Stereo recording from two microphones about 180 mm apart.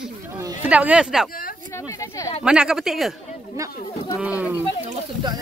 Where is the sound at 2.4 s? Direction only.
5° right (ahead or behind).